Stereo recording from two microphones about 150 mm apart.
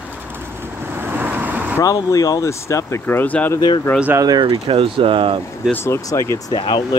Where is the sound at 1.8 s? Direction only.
20° left (ahead or behind).